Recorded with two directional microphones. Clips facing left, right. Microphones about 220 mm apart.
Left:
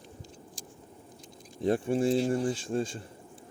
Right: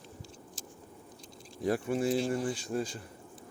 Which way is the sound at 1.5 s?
25° left (ahead or behind).